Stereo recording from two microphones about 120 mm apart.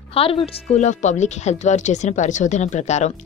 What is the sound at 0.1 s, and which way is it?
Speech, 50° left (ahead or behind).